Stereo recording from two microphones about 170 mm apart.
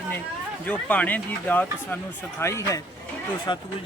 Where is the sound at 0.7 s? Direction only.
10° left (ahead or behind).